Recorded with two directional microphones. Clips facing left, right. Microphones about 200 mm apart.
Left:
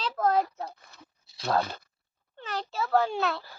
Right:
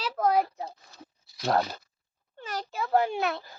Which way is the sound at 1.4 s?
20° right (ahead or behind).